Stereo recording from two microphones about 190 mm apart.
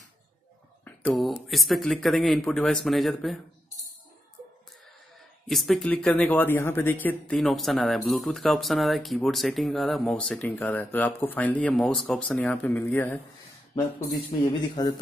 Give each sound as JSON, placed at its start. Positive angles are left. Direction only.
{"t": 0.8, "sound": "speech", "side_deg": 5}
{"t": 5.5, "sound": "speech", "side_deg": 0}
{"t": 14.4, "sound": "speech", "side_deg": 20}